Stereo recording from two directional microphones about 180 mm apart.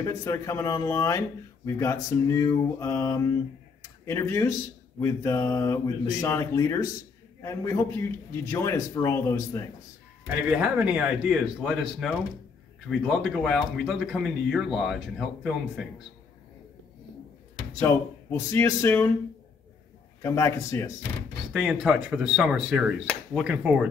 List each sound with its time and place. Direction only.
0.0 s speech: 15° left (ahead or behind)
10.2 s speech: 10° right (ahead or behind)
17.7 s speech: 15° left (ahead or behind)
20.2 s speech: 15° left (ahead or behind)
21.5 s speech: 5° right (ahead or behind)